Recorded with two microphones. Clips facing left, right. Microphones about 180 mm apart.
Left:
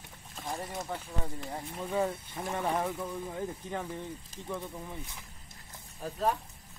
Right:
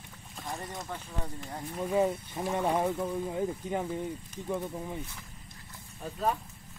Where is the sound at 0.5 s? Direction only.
5° left (ahead or behind).